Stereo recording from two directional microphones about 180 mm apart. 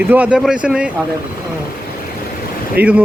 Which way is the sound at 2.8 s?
60° right (ahead or behind).